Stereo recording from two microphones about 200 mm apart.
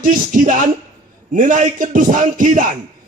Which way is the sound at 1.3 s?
40° right (ahead or behind).